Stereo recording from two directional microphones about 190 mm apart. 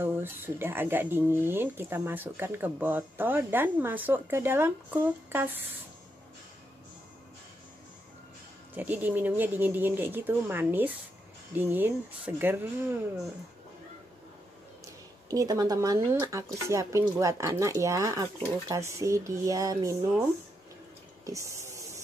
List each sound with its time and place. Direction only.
0.0 s speech: 10° right (ahead or behind)
8.7 s speech: 10° right (ahead or behind)
15.2 s speech: 20° right (ahead or behind)
21.3 s a sound: 15° right (ahead or behind)